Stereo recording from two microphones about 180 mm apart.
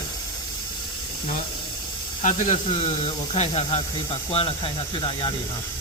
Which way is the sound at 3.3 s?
35° left (ahead or behind).